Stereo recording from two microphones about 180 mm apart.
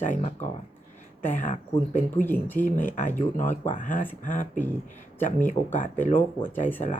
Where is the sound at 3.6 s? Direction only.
45° left (ahead or behind).